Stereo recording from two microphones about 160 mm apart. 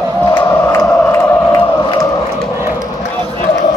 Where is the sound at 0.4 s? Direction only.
15° left (ahead or behind).